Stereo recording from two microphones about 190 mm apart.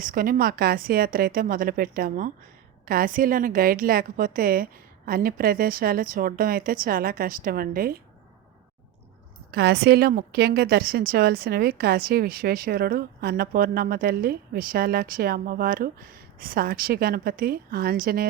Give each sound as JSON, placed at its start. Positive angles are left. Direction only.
{"t": 0.0, "sound": "a woman's voice", "side_deg": -45}
{"t": 9.5, "sound": "a woman's voice", "side_deg": -60}